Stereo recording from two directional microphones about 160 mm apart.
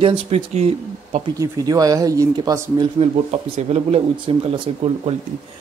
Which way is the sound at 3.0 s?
40° right (ahead or behind).